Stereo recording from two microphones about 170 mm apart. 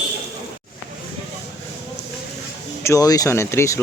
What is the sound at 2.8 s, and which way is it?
Speech, 20° left (ahead or behind).